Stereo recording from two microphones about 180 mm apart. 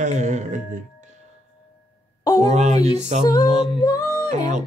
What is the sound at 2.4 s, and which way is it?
Speech, 40° right (ahead or behind).